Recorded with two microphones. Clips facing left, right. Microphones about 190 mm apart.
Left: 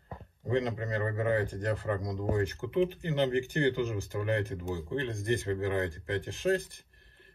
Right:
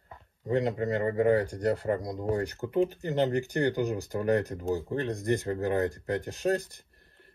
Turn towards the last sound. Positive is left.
turn(degrees=-40)  # may be behind; listen again after turning